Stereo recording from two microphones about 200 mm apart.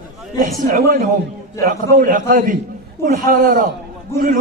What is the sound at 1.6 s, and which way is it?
A man's voice, 45° right (ahead or behind).